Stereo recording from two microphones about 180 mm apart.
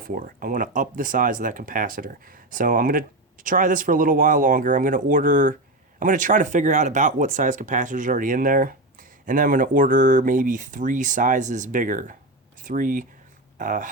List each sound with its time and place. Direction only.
0.1 s speech: 50° right (ahead or behind)